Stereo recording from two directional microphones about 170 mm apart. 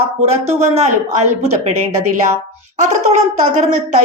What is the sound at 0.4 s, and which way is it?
A woman's voice, 40° right (ahead or behind).